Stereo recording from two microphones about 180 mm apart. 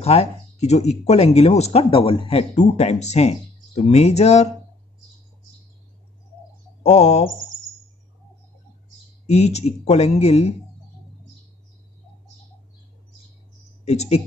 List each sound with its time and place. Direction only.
0.0 s speech: 35° left (ahead or behind)
6.8 s speech: 35° left (ahead or behind)
9.2 s speech: 35° left (ahead or behind)
13.8 s speech: 35° left (ahead or behind)